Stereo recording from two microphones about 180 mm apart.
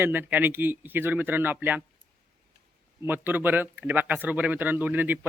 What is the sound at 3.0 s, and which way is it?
Speech, 10° right (ahead or behind).